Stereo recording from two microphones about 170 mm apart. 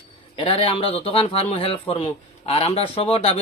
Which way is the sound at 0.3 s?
35° left (ahead or behind).